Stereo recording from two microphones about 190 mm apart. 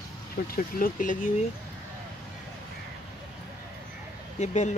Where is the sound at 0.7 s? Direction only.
45° left (ahead or behind).